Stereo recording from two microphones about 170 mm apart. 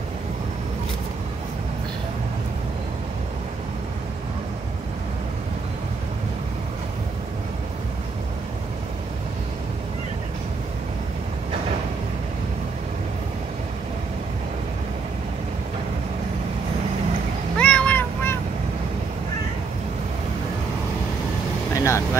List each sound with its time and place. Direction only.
17.6 s vehicle: 5° left (ahead or behind)
21.7 s vehicle: 15° left (ahead or behind)